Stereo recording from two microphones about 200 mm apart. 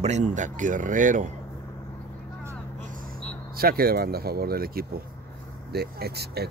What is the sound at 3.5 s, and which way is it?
Speech, 50° right (ahead or behind).